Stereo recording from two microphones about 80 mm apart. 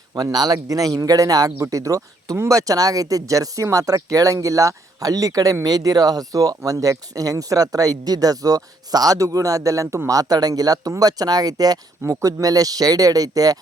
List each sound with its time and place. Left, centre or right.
0.1 s speech: right